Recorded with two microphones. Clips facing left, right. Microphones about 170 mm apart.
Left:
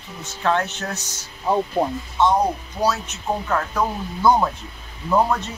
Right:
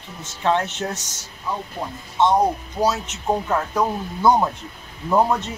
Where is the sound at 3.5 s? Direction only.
20° right (ahead or behind).